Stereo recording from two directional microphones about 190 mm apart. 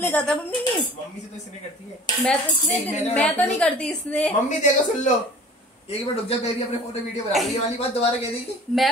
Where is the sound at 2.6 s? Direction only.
35° left (ahead or behind).